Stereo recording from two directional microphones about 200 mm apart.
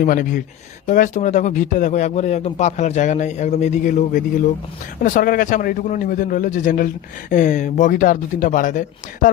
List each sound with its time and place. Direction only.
0.0 s a man's voice: 45° left (ahead or behind)